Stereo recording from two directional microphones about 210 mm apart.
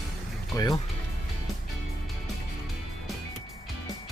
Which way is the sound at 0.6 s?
15° left (ahead or behind).